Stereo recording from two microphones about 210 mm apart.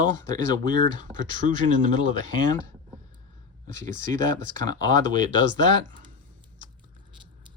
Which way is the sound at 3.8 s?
35° right (ahead or behind).